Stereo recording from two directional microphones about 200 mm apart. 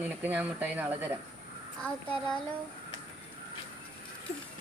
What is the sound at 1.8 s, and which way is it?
Speech, 5° left (ahead or behind).